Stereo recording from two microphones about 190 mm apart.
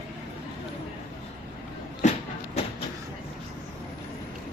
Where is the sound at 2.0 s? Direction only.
35° left (ahead or behind).